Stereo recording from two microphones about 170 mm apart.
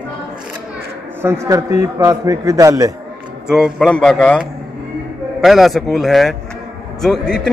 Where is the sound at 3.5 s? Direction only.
Centre (ahead or behind).